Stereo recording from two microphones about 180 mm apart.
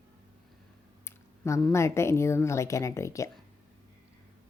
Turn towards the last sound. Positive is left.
turn(degrees=15)  # may be behind; listen again after turning